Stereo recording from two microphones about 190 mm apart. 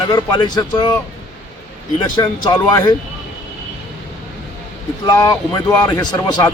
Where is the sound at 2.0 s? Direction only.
20° left (ahead or behind).